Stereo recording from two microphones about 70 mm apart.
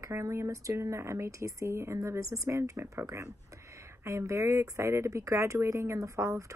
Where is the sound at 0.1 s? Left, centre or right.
Right.